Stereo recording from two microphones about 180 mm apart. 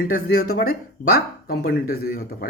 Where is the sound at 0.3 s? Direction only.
55° left (ahead or behind).